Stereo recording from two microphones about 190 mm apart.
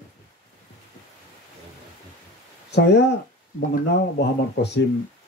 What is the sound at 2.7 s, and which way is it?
Speech, 60° left (ahead or behind).